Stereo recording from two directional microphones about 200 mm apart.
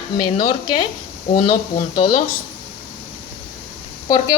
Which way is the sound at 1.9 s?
20° left (ahead or behind).